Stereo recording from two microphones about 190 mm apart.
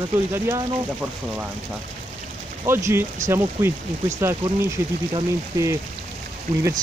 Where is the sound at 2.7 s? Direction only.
15° right (ahead or behind).